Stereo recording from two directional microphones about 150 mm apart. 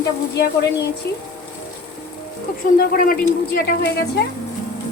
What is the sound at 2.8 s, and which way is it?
Speech, 80° left.